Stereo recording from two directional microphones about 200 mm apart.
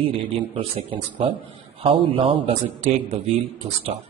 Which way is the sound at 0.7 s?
30° right (ahead or behind).